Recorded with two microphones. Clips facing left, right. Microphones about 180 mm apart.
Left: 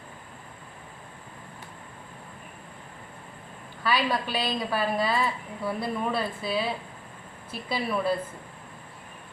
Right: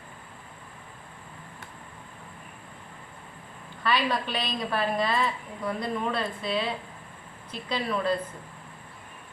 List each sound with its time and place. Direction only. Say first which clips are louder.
3.8 s a woman's voice: even; 5° left (ahead or behind)